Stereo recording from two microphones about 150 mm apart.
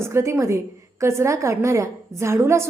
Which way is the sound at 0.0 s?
20° right (ahead or behind).